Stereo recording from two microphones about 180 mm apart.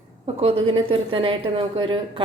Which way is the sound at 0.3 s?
30° right (ahead or behind).